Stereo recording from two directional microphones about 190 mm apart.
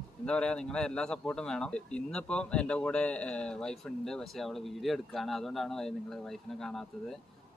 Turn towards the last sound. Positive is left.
turn(degrees=0)  # may be behind; listen again after turning